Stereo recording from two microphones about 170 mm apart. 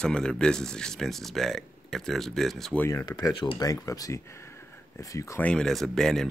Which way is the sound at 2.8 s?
20° left (ahead or behind).